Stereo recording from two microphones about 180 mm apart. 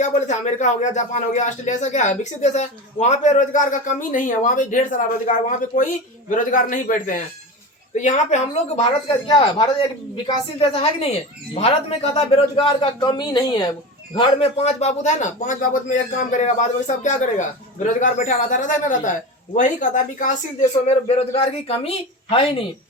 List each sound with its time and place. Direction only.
0.0 s a man's voice: 40° left (ahead or behind)
9.2 s a man's voice: 25° left (ahead or behind)